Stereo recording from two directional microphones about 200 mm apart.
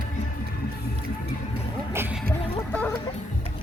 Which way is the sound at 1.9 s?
10° right (ahead or behind).